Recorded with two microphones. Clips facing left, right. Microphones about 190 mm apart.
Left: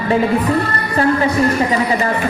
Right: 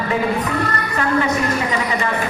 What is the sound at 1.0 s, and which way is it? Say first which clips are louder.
A woman's voice: left 5 dB; 35° left (ahead or behind).